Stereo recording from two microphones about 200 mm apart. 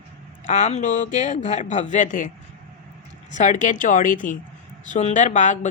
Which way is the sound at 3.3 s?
40° left (ahead or behind).